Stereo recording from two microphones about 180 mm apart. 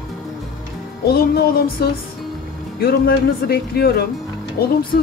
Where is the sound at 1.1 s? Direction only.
60° left (ahead or behind).